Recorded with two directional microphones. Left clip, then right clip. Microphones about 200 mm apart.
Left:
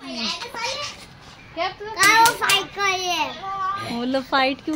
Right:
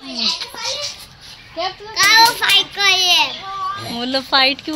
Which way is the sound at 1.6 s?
55° right (ahead or behind).